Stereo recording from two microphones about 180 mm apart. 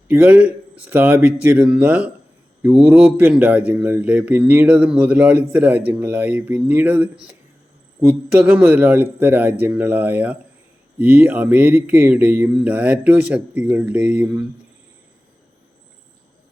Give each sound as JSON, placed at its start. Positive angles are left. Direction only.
{"t": 0.1, "sound": "speech", "side_deg": -10}